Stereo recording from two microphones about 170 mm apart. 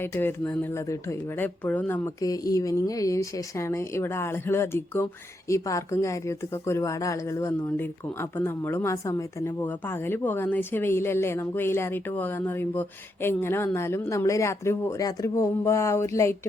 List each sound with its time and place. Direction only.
0.0 s speech: 15° left (ahead or behind)
2.2 s speech: 20° left (ahead or behind)